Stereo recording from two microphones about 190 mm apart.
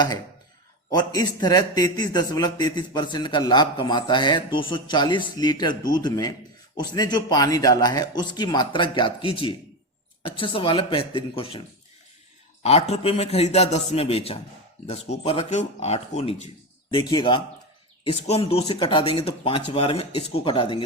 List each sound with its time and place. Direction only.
0.9 s a man's voice: 20° left (ahead or behind)
12.6 s a man's voice: 35° left (ahead or behind)